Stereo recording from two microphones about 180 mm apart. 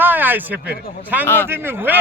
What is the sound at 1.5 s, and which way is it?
Speech, 10° right (ahead or behind).